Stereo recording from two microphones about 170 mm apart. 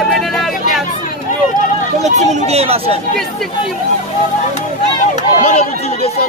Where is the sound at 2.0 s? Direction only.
45° right (ahead or behind).